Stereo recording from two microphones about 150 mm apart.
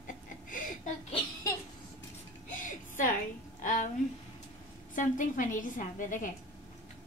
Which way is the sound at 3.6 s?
60° left (ahead or behind).